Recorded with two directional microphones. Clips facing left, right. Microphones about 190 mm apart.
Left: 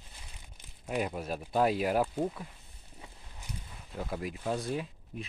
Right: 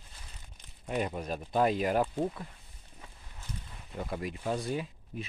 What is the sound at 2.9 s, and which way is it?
Walk, 15° left (ahead or behind).